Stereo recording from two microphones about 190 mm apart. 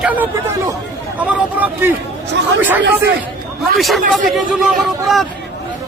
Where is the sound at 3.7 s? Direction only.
Centre (ahead or behind).